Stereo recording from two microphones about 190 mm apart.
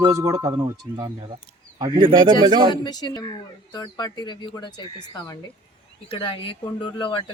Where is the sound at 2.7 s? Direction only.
25° left (ahead or behind).